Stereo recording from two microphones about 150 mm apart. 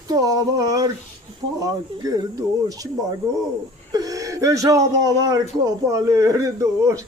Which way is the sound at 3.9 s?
25° right (ahead or behind).